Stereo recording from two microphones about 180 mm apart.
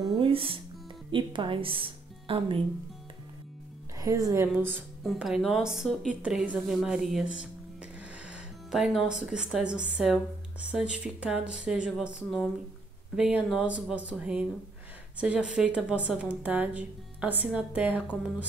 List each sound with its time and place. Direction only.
0.2 s music: 30° right (ahead or behind)
1.1 s a woman's voice: 25° right (ahead or behind)
4.0 s speech: 20° right (ahead or behind)
4.7 s speech: centre (ahead or behind)